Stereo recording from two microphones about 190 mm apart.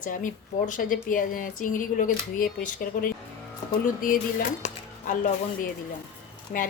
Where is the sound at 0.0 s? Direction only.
45° left (ahead or behind).